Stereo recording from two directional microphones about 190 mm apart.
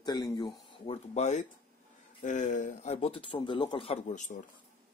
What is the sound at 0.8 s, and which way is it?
Speech, 35° left (ahead or behind).